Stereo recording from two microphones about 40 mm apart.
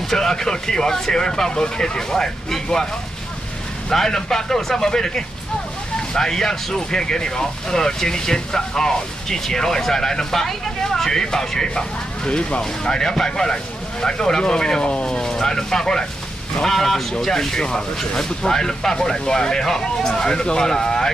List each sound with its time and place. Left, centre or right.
0.1 s speech: centre
3.9 s speech: centre
15.0 s speech: centre